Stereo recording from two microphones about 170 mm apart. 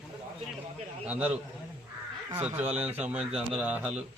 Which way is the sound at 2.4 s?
10° right (ahead or behind).